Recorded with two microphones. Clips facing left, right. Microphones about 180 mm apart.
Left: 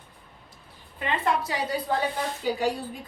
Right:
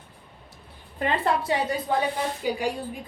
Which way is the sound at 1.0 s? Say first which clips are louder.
Right 2 dB; 35° right (ahead or behind).